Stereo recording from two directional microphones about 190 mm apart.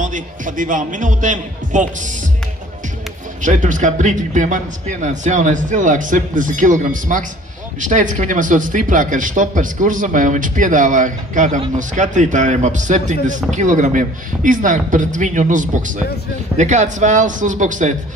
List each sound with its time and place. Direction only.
0.0 s speech: 45° right (ahead or behind)
3.4 s a man's voice: 40° right (ahead or behind)